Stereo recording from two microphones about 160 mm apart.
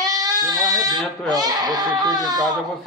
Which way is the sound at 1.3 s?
25° right (ahead or behind).